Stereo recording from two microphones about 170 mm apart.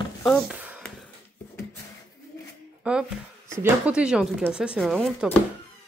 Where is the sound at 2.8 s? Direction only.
5° right (ahead or behind).